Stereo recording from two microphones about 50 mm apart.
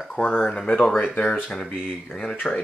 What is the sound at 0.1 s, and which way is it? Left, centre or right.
Speech, left.